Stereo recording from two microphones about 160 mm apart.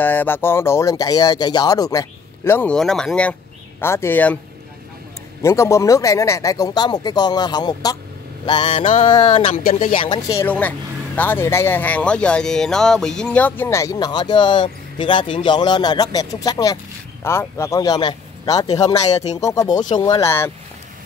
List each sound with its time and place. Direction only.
0.0 s speech: 10° left (ahead or behind)
5.4 s speech: 15° left (ahead or behind)
8.5 s mantra: 30° left (ahead or behind)
9.1 s speech: 30° left (ahead or behind)